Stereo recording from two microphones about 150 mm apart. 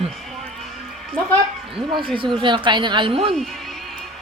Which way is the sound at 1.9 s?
35° right (ahead or behind).